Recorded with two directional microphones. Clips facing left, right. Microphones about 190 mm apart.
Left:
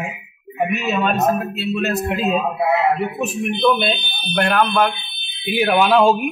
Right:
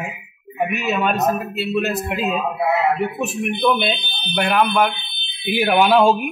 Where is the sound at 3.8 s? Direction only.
5° right (ahead or behind).